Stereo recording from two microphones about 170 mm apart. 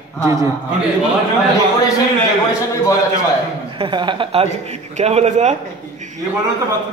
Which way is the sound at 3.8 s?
30° right (ahead or behind).